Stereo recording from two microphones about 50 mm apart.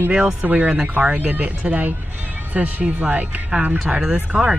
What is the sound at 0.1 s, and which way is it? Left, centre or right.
Speech, right.